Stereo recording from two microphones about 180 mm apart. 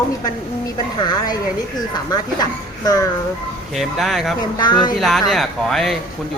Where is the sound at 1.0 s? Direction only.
25° left (ahead or behind).